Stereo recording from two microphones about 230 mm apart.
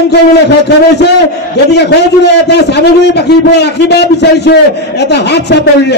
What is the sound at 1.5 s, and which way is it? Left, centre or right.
A man's voice, left.